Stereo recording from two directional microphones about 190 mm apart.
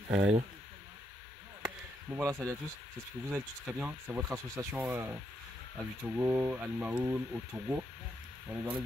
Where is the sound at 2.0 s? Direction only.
10° right (ahead or behind).